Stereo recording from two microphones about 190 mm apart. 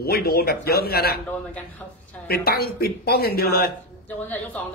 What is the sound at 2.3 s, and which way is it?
Speech, 55° left (ahead or behind).